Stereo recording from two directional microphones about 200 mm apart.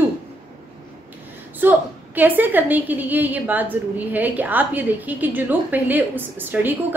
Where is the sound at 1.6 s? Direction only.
10° right (ahead or behind).